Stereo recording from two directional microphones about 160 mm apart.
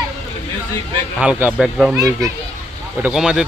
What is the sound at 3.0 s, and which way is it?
Speech, 5° right (ahead or behind).